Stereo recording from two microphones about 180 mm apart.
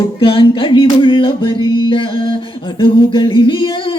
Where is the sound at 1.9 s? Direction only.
30° left (ahead or behind).